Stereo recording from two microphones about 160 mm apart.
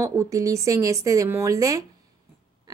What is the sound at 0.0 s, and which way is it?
A woman's voice, 20° right (ahead or behind).